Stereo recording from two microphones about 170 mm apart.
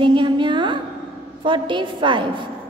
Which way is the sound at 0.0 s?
30° right (ahead or behind).